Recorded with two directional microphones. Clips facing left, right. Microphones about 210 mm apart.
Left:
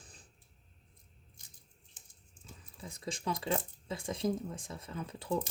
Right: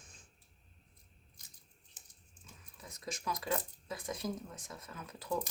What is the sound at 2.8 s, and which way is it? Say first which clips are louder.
A woman's voice: left 4 dB; 30° left (ahead or behind).